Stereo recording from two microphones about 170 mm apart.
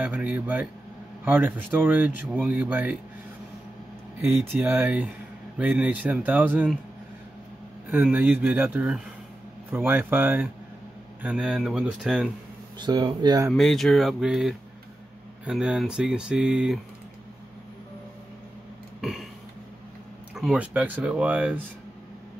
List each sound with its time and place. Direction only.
0.0 s speech: 10° right (ahead or behind)
4.5 s speech: 10° right (ahead or behind)
7.9 s speech: 10° right (ahead or behind)
12.7 s speech: 25° right (ahead or behind)
13.5 s speech: centre (ahead or behind)
18.9 s a sound: centre (ahead or behind)
20.3 s speech: 5° right (ahead or behind)